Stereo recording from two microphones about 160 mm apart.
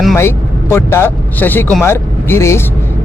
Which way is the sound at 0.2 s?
15° left (ahead or behind).